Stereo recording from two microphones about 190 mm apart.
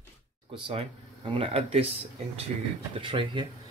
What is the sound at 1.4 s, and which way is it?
Speech, 30° right (ahead or behind).